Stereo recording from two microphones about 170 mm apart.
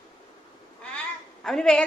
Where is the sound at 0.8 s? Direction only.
5° left (ahead or behind).